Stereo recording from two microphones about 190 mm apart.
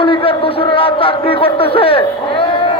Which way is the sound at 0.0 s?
30° left (ahead or behind).